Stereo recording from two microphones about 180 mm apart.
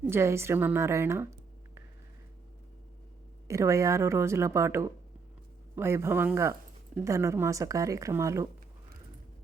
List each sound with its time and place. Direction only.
0.0 s speech: 15° right (ahead or behind)
3.4 s speech: 15° right (ahead or behind)